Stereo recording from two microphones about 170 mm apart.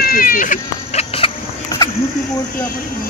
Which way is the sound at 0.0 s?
55° left (ahead or behind).